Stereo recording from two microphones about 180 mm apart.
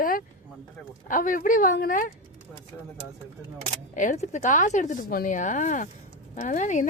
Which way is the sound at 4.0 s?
45° left (ahead or behind).